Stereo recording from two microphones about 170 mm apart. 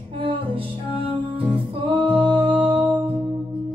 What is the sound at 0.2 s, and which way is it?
Music, 30° right (ahead or behind).